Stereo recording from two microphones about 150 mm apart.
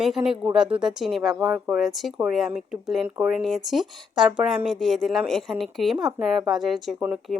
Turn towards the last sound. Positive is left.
turn(degrees=0)  # may be behind; listen again after turning